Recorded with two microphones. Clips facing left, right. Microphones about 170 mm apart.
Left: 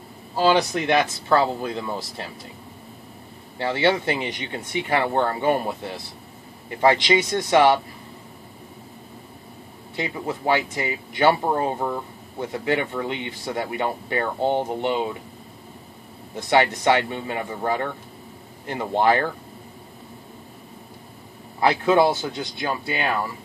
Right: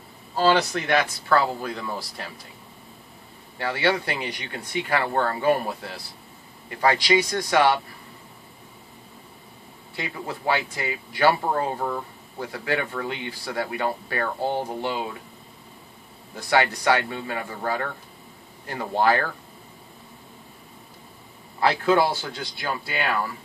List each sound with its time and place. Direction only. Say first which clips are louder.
0.4 s speech: left 1 dB; 15° left (ahead or behind)
3.5 s speech: left 3 dB; 25° left (ahead or behind)
9.9 s speech: left 4 dB; 25° left (ahead or behind)
16.3 s speech: left 3 dB; 20° left (ahead or behind)
21.5 s speech: left 2 dB; 20° left (ahead or behind)